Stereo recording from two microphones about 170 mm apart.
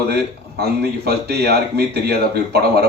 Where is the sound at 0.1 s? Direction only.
70° right (ahead or behind).